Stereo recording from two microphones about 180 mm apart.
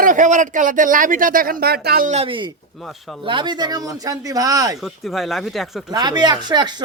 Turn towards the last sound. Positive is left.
turn(degrees=-25)  # may be behind; listen again after turning